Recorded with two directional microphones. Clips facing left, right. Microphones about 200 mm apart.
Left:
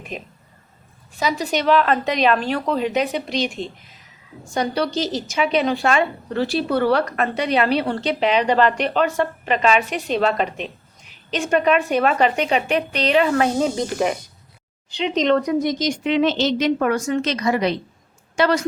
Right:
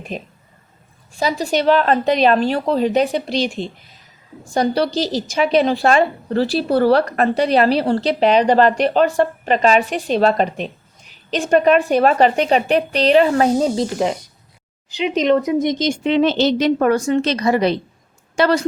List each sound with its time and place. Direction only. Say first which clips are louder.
0.1 s a woman's voice: right 3 dB; 35° right (ahead or behind)
14.9 s speech: right 2 dB; 10° right (ahead or behind)
15.6 s a woman's voice: right 3 dB; 25° right (ahead or behind)